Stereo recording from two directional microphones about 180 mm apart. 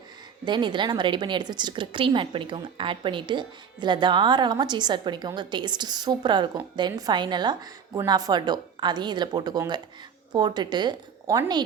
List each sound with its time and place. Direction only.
0.4 s a woman's voice: 25° right (ahead or behind)